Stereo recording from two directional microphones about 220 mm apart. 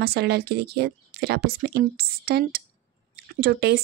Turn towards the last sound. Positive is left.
turn(degrees=-50)  # may be behind; listen again after turning